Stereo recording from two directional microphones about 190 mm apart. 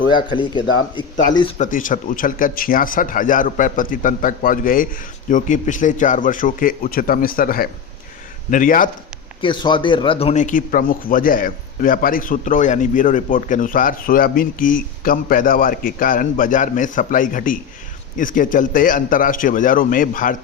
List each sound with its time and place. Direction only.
0.3 s speech: 25° left (ahead or behind)
1.5 s a man's voice: 45° left (ahead or behind)
9.4 s a man's voice: 25° left (ahead or behind); by 20.3 s 45° left (ahead or behind)